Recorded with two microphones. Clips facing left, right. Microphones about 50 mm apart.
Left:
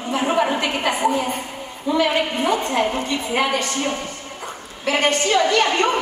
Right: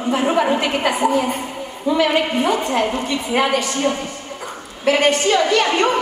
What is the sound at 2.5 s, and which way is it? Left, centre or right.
Speech, right.